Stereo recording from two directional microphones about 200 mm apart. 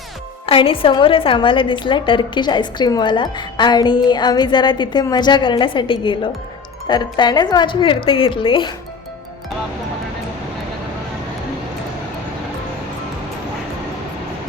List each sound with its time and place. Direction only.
0.4 s a woman's voice: 25° left (ahead or behind)